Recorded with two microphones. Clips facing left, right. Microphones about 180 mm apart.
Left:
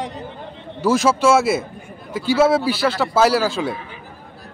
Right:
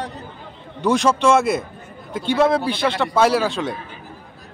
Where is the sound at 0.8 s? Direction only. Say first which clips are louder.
Left 1 dB; 5° left (ahead or behind).